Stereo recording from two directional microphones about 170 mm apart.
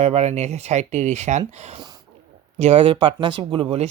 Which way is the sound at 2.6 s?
35° right (ahead or behind).